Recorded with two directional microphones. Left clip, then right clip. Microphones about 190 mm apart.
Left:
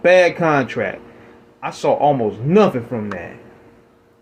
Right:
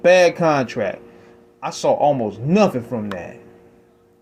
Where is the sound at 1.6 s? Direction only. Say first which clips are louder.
Left 1 dB; 50° right (ahead or behind).